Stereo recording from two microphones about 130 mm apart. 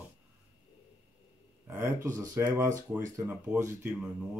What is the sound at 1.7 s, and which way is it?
Speech, 20° right (ahead or behind).